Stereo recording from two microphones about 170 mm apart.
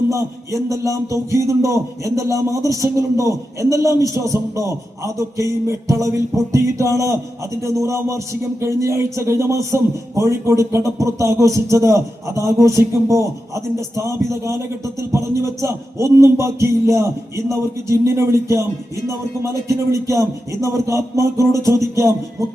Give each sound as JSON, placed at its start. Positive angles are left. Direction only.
{"t": 0.1, "sound": "a man's voice", "side_deg": -20}
{"t": 14.3, "sound": "a man's voice", "side_deg": -15}
{"t": 19.6, "sound": "a man's voice", "side_deg": -15}